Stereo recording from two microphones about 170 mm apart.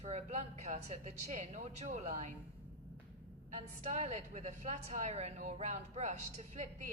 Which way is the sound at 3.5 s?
40° right (ahead or behind).